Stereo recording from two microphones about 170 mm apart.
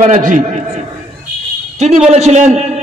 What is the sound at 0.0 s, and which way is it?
Speech, 45° right (ahead or behind).